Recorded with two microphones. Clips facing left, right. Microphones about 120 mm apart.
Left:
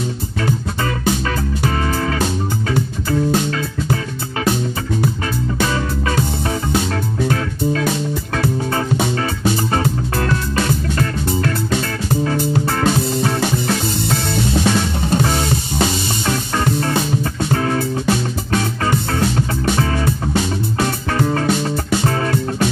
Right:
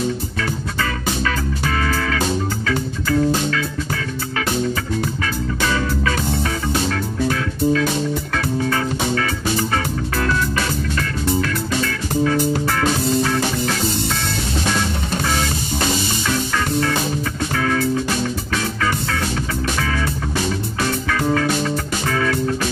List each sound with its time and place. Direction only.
1.2 s music: 25° left (ahead or behind)
5.6 s music: 25° left (ahead or behind)
11.0 s music: 35° left (ahead or behind)
15.1 s music: 30° left (ahead or behind)